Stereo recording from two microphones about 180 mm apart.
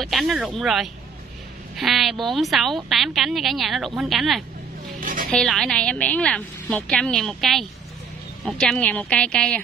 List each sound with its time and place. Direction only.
0.0 s a woman's voice: centre (ahead or behind)
5.0 s music: 50° right (ahead or behind)
5.3 s a woman's voice: centre (ahead or behind)